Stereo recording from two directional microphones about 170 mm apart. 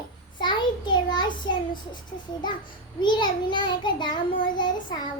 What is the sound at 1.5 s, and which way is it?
A child's voice, 25° left (ahead or behind).